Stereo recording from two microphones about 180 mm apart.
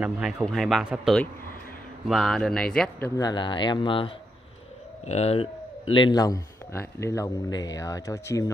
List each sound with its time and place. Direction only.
0.0 s speech: 5° right (ahead or behind)
3.2 s a man's voice: 25° left (ahead or behind)